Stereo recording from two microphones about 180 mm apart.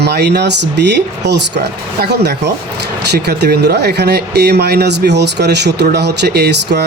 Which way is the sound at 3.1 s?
65° right (ahead or behind).